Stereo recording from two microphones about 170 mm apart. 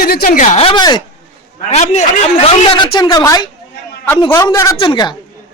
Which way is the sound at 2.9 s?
25° left (ahead or behind).